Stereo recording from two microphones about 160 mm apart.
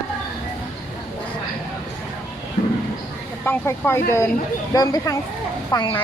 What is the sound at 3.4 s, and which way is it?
Speech, 15° left (ahead or behind).